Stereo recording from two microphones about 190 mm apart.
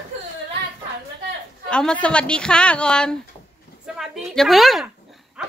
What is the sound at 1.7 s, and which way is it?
A woman's voice, 5° left (ahead or behind).